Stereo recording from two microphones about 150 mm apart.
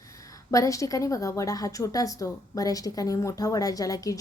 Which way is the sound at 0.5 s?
20° left (ahead or behind).